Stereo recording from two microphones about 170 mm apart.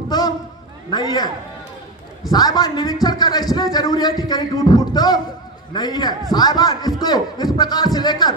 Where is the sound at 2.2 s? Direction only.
25° left (ahead or behind).